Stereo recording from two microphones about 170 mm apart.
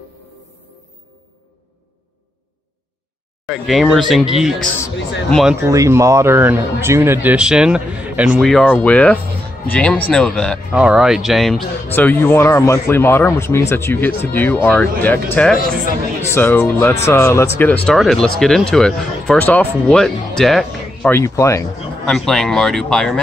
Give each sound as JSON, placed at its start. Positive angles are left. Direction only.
{"t": 3.4, "sound": "speech", "side_deg": 0}
{"t": 5.7, "sound": "speech", "side_deg": -20}
{"t": 10.7, "sound": "speech", "side_deg": -5}
{"t": 11.9, "sound": "speech", "side_deg": 10}
{"t": 21.1, "sound": "speech", "side_deg": 15}
{"t": 22.0, "sound": "speech", "side_deg": 0}